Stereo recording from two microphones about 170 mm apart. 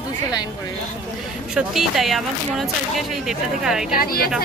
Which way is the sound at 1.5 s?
Centre (ahead or behind).